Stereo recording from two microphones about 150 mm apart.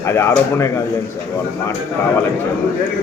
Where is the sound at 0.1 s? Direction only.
15° left (ahead or behind).